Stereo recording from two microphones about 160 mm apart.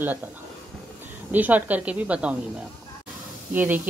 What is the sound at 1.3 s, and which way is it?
Speech, 10° right (ahead or behind).